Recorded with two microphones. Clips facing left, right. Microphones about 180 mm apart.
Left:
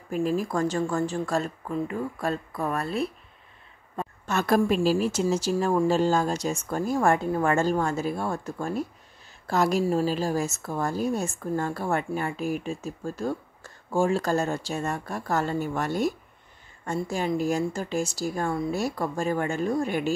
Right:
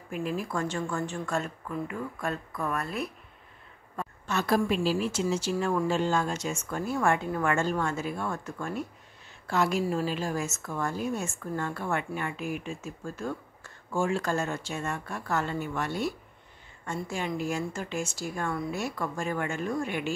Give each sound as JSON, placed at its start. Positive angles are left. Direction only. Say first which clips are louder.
{"t": 0.1, "sound": "a woman's voice", "louder": "left 6 dB", "side_deg": 35}
{"t": 4.3, "sound": "a woman's voice", "louder": "left 4 dB", "side_deg": 50}